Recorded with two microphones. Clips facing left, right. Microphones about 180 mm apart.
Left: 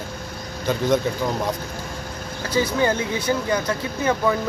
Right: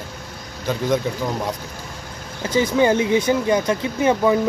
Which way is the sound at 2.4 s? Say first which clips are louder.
Right 4 dB; 20° right (ahead or behind).